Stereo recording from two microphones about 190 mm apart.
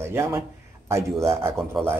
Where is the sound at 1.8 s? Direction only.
Centre (ahead or behind).